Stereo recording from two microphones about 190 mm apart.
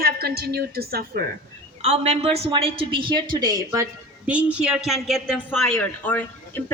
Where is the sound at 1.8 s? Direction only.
30° right (ahead or behind).